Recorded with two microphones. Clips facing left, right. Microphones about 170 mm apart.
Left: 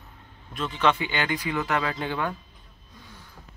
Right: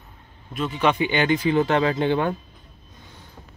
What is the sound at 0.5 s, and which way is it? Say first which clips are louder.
Speech: right 2 dB; 5° right (ahead or behind).